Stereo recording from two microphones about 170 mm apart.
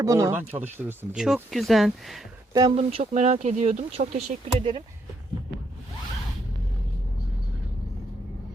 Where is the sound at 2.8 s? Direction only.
40° right (ahead or behind).